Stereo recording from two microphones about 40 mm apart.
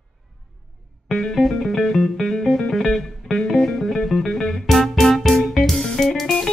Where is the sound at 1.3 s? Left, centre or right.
Centre.